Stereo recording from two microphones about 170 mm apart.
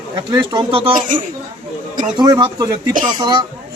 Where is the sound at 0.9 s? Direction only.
50° right (ahead or behind).